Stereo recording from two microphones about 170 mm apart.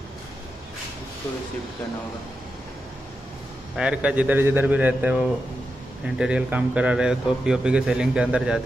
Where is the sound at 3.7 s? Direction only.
5° right (ahead or behind).